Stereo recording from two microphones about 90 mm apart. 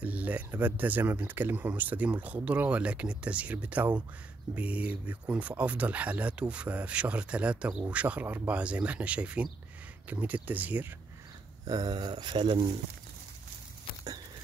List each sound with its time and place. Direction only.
0.0 s speech: 15° right (ahead or behind)
11.6 s speech: 45° right (ahead or behind); by 12.7 s 65° right (ahead or behind)